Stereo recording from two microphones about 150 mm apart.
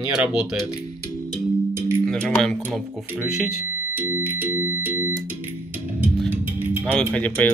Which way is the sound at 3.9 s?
15° right (ahead or behind).